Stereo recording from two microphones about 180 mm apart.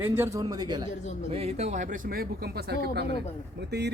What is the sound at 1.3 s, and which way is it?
Speech, 35° right (ahead or behind).